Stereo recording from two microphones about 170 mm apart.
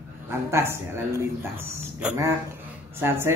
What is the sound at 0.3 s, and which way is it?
Speech, 15° right (ahead or behind).